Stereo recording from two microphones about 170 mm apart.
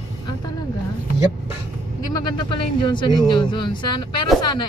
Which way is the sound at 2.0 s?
25° left (ahead or behind).